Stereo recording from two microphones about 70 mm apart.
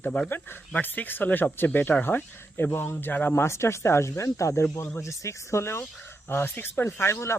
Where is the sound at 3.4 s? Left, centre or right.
Left.